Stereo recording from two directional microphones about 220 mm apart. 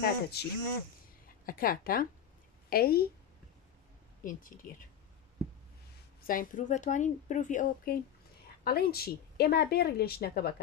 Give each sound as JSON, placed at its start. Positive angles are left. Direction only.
{"t": 0.0, "sound": "a woman's voice", "side_deg": 45}
{"t": 4.2, "sound": "a woman's voice", "side_deg": 40}
{"t": 6.2, "sound": "a woman's voice", "side_deg": 40}